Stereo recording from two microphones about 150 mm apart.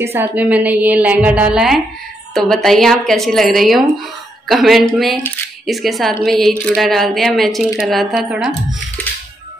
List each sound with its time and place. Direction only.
0.0 s a woman's voice: 15° right (ahead or behind)